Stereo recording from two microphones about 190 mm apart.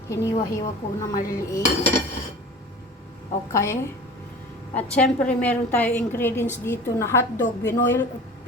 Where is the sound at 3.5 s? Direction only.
15° left (ahead or behind).